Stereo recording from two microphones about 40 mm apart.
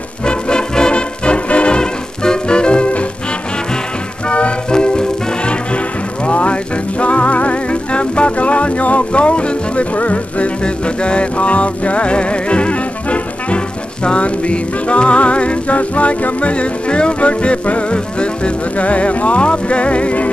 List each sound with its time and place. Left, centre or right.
0.2 s music: left
4.3 s music: left